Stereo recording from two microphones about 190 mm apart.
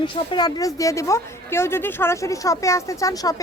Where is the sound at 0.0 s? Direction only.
25° left (ahead or behind).